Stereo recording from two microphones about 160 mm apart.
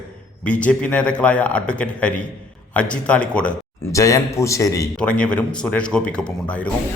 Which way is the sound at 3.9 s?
20° left (ahead or behind).